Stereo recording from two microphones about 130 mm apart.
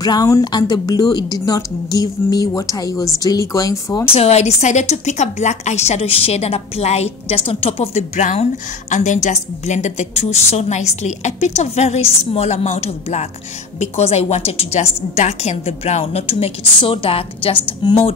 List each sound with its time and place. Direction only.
0.0 s a woman's voice: 30° left (ahead or behind)
4.1 s a woman's voice: 55° left (ahead or behind)